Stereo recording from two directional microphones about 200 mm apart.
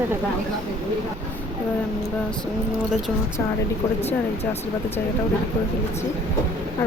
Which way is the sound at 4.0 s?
30° left (ahead or behind).